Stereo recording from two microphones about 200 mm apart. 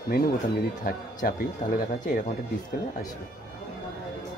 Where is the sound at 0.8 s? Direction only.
40° left (ahead or behind).